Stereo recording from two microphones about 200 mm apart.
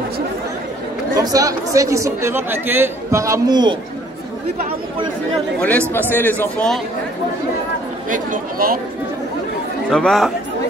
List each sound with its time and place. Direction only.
1.1 s speech: 15° right (ahead or behind)
5.6 s speech: 10° left (ahead or behind)
8.1 s speech: 45° right (ahead or behind)
9.8 s speech: centre (ahead or behind)